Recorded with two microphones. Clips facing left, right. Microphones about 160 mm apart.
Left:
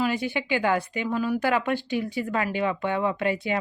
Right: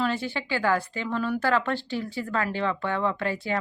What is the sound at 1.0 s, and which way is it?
Speech, 5° left (ahead or behind).